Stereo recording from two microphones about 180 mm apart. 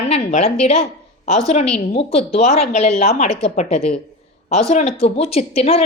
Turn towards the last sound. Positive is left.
turn(degrees=35)  # may be behind; listen again after turning